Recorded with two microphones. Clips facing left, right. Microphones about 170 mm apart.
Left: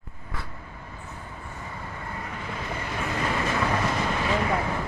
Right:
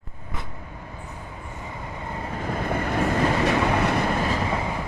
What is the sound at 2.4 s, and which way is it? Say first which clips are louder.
Vehicle: right 9 dB; 50° right (ahead or behind).